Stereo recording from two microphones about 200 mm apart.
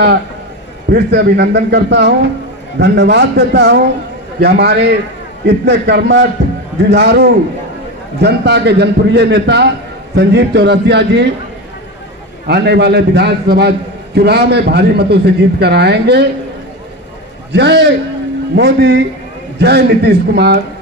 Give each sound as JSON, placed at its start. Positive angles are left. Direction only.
{"t": 0.8, "sound": "a man's voice", "side_deg": -55}
{"t": 12.4, "sound": "a man's voice", "side_deg": -55}
{"t": 17.5, "sound": "a man's voice", "side_deg": -60}